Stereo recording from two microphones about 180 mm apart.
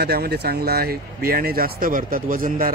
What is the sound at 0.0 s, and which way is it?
Speech, 60° right (ahead or behind).